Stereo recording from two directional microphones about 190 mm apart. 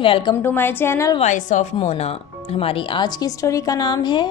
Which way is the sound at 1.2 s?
40° left (ahead or behind).